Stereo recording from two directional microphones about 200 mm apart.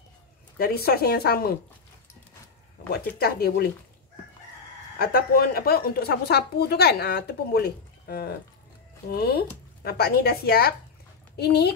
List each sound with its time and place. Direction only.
0.6 s speech: 50° left (ahead or behind)
2.9 s speech: 50° left (ahead or behind)
4.9 s speech: 50° left (ahead or behind)